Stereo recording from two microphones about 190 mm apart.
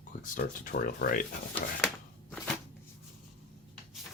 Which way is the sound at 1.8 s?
5° left (ahead or behind).